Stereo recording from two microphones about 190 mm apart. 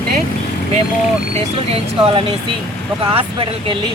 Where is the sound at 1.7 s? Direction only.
30° right (ahead or behind).